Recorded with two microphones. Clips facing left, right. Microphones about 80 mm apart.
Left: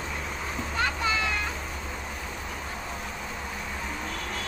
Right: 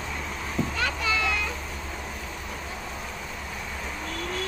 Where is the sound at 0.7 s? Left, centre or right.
Left.